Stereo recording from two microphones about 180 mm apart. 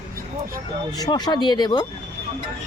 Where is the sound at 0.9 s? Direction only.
20° left (ahead or behind).